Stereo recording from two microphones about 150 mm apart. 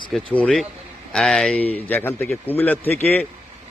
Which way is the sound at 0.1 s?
5° left (ahead or behind).